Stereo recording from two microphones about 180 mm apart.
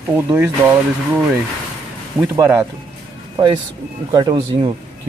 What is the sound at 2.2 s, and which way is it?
Speech, 10° right (ahead or behind).